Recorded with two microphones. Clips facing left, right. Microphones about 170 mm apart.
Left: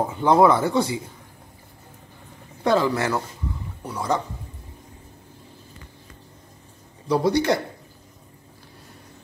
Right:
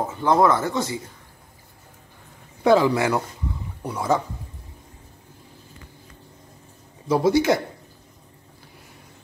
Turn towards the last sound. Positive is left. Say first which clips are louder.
# right 2 dB
turn(degrees=-5)  # may be behind; listen again after turning